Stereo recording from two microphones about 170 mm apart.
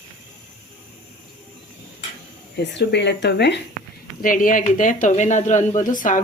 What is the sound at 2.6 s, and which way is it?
Speech, 90° left.